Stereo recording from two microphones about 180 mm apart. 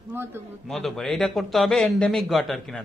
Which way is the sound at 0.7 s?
Centre (ahead or behind).